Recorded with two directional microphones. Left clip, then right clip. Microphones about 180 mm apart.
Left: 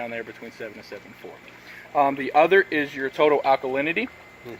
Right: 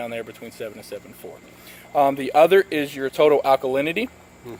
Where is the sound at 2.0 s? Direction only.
40° right (ahead or behind).